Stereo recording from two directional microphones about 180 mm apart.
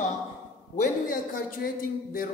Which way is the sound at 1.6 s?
50° left (ahead or behind).